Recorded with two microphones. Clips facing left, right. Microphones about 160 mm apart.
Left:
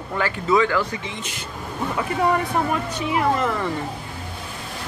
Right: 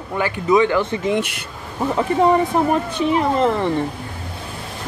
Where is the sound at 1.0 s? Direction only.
65° right (ahead or behind).